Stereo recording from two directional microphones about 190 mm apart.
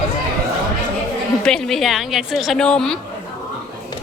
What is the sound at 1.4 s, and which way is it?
A woman's voice, centre (ahead or behind).